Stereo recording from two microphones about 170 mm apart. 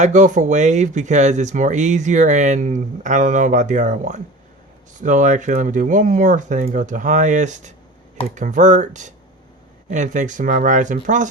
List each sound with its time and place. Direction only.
0.0 s speech: 45° right (ahead or behind)